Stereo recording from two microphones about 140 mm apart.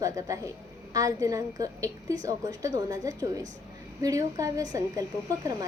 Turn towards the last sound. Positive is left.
turn(degrees=-20)  # may be behind; listen again after turning